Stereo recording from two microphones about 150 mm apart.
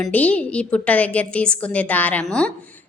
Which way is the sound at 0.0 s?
10° left (ahead or behind).